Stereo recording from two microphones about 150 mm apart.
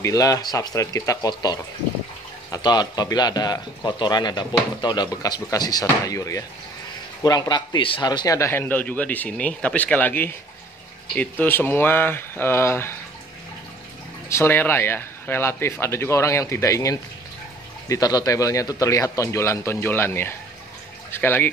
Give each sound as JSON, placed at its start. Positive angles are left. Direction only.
{"t": 0.0, "sound": "a man's voice", "side_deg": 20}
{"t": 14.3, "sound": "a man's voice", "side_deg": 15}